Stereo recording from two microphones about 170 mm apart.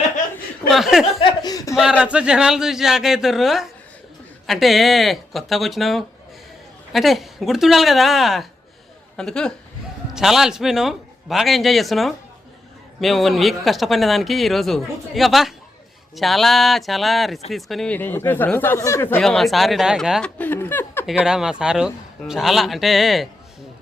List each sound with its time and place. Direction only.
0.7 s speech: centre (ahead or behind)
1.2 s chuckle: 25° left (ahead or behind)
1.7 s speech: 5° right (ahead or behind); by 19.0 s 15° left (ahead or behind)
19.1 s speech: 5° left (ahead or behind)
20.4 s speech: 10° left (ahead or behind)
21.1 s speech: 5° right (ahead or behind)